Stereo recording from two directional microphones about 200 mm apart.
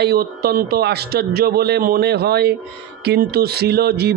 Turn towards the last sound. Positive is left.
turn(degrees=-50)  # may be behind; listen again after turning